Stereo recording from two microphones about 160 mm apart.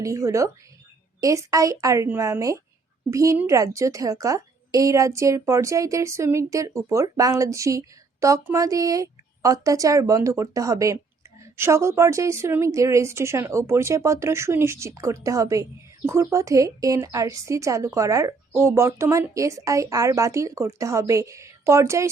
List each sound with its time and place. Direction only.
0.0 s a woman's voice: 20° right (ahead or behind)